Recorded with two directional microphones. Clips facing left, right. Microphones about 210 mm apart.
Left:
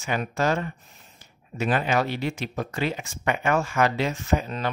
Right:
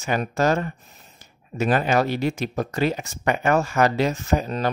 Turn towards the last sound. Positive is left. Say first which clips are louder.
# right 3 dB
turn(degrees=-40)  # may be behind; listen again after turning